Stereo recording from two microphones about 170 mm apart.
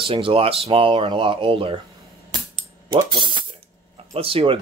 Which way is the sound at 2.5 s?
30° right (ahead or behind).